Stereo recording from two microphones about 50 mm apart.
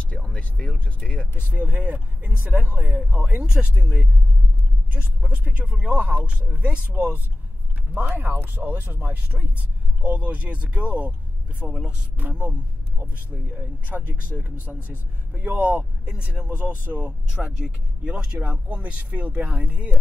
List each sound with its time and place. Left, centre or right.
0.0 s speech: left
1.4 s speech: right
3.3 s speech: centre
11.6 s speech: centre
13.0 s speech: right
16.1 s speech: right
16.8 s speech: right
17.3 s speech: centre; by 19.9 s right